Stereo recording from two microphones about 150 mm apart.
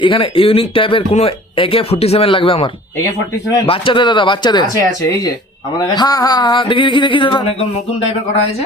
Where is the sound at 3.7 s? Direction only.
35° left (ahead or behind).